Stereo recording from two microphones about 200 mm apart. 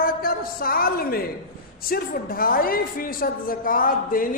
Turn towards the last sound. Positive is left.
turn(degrees=45)  # may be behind; listen again after turning